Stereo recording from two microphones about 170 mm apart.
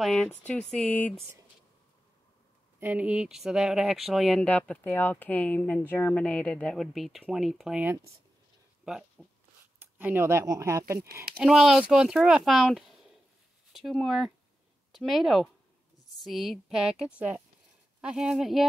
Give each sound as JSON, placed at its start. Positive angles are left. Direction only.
{"t": 0.0, "sound": "speech", "side_deg": 0}
{"t": 2.8, "sound": "speech", "side_deg": -10}
{"t": 9.2, "sound": "a sound", "side_deg": 0}
{"t": 9.8, "sound": "speech", "side_deg": -10}
{"t": 11.3, "sound": "speech", "side_deg": 0}